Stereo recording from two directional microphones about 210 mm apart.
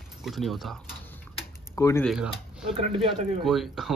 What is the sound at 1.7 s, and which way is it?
Speech, 15° left (ahead or behind).